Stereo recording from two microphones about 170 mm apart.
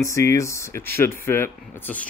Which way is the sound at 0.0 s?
15° left (ahead or behind).